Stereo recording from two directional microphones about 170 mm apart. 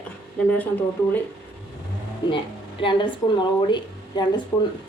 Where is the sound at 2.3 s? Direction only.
30° left (ahead or behind).